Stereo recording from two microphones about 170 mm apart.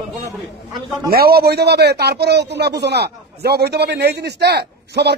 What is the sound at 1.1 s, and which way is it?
Speech, 65° right (ahead or behind).